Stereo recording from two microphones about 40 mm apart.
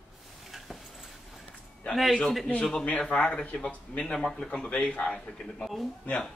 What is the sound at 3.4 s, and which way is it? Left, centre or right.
A man's voice, left.